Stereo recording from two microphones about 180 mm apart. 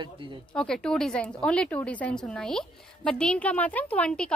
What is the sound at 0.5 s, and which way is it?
Speech, 5° left (ahead or behind).